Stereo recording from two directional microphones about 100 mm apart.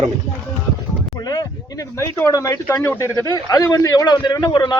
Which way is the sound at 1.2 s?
40° left (ahead or behind).